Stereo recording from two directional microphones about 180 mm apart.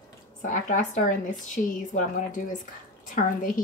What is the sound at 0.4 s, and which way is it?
Speech, 45° left (ahead or behind).